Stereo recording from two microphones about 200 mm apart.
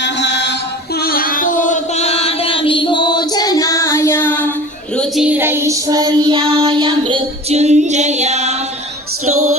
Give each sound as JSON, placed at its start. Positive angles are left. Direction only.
{"t": 0.0, "sound": "chant", "side_deg": 60}
{"t": 1.0, "sound": "music", "side_deg": 45}
{"t": 4.9, "sound": "child singing", "side_deg": -5}
{"t": 9.3, "sound": "music", "side_deg": -90}